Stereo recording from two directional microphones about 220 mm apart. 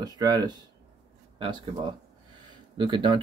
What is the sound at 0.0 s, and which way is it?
Speech, 20° right (ahead or behind).